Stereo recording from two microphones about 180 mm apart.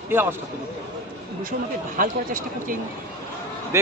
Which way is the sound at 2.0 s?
50° right (ahead or behind).